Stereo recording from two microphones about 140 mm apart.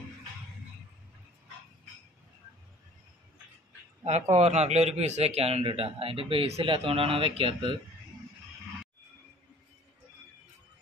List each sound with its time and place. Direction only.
4.0 s a man's voice: 50° right (ahead or behind)